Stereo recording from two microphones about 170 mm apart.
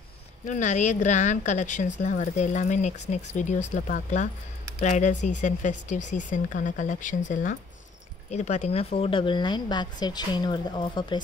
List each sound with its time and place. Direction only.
0.5 s speech: 45° left (ahead or behind); by 11.1 s 25° left (ahead or behind)